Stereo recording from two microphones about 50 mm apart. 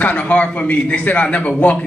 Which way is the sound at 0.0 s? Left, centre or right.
Left.